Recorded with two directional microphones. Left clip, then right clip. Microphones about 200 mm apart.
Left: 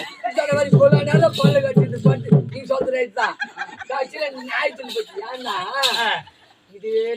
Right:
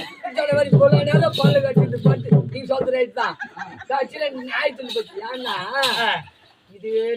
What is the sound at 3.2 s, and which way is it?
Chicken, 40° left (ahead or behind).